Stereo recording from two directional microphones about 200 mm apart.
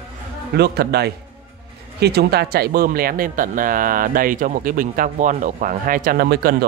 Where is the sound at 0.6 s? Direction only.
55° right (ahead or behind).